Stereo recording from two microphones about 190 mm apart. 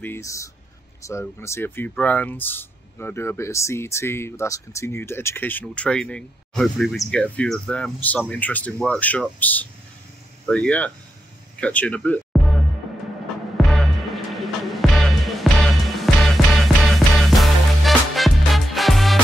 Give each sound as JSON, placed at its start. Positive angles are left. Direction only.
{"t": 0.0, "sound": "speech", "side_deg": 15}
{"t": 11.6, "sound": "music", "side_deg": 5}
{"t": 13.7, "sound": "music", "side_deg": 0}